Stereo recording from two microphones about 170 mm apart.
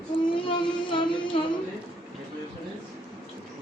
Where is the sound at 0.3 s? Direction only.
30° left (ahead or behind).